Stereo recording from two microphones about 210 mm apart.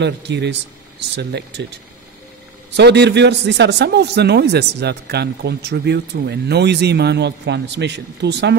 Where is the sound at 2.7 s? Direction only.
55° right (ahead or behind).